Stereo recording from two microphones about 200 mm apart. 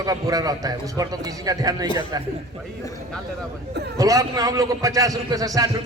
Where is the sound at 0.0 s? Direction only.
20° right (ahead or behind).